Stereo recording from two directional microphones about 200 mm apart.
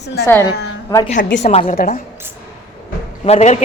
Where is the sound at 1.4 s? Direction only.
35° left (ahead or behind).